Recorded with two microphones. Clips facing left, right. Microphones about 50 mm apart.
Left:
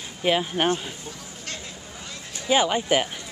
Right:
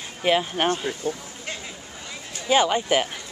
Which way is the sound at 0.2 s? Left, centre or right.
Centre.